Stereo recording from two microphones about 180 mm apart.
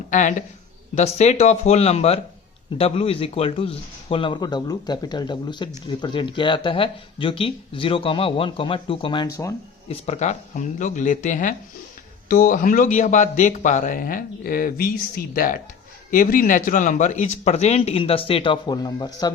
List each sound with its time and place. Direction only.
0.1 s a man's voice: 40° left (ahead or behind); by 9.3 s 25° left (ahead or behind)
9.9 s a man's voice: 40° left (ahead or behind); by 19.3 s 20° left (ahead or behind)